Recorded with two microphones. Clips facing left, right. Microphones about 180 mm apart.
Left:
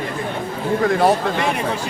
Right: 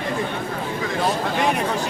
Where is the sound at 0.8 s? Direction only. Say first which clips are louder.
Left 8 dB; 60° left (ahead or behind).